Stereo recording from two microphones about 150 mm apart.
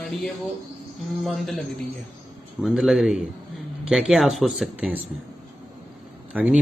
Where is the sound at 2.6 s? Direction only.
5° right (ahead or behind).